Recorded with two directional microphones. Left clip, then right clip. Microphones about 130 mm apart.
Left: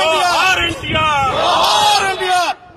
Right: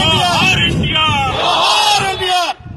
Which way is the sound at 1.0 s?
15° left (ahead or behind).